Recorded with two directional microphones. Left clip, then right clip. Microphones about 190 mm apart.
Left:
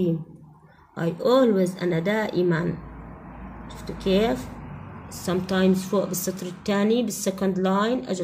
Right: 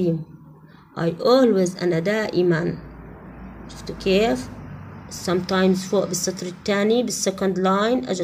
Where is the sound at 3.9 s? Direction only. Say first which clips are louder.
Right 3 dB; 20° right (ahead or behind).